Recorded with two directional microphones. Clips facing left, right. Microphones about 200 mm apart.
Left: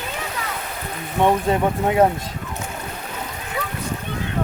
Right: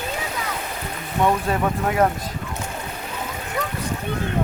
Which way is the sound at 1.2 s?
20° left (ahead or behind).